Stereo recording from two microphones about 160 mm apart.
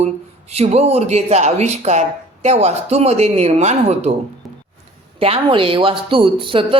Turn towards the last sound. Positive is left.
turn(degrees=-30)  # may be behind; listen again after turning